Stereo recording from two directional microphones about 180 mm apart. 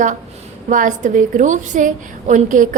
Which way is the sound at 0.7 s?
45° right (ahead or behind).